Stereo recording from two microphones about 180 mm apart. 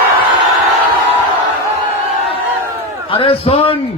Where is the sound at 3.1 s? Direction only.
30° left (ahead or behind).